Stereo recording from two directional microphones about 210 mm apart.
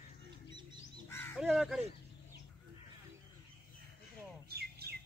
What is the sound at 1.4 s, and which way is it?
Speech, centre (ahead or behind).